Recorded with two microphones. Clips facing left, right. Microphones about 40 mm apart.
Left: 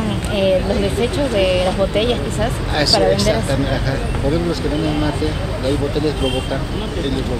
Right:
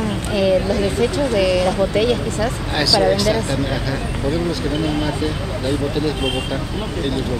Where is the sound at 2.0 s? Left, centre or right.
Left.